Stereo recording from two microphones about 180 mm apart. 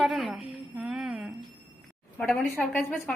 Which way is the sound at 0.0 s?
Centre (ahead or behind).